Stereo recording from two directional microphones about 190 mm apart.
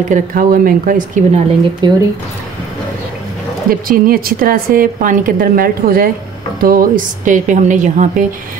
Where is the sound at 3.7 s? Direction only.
50° right (ahead or behind).